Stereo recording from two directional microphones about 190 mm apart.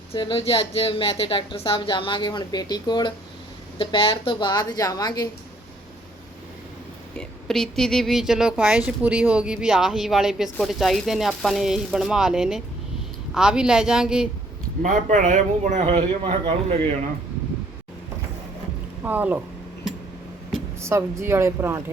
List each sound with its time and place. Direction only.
0.1 s a woman's voice: 25° left (ahead or behind)
7.2 s speech: centre (ahead or behind)
14.8 s speech: 40° right (ahead or behind)
19.0 s speech: 10° right (ahead or behind)
20.8 s speech: 15° right (ahead or behind)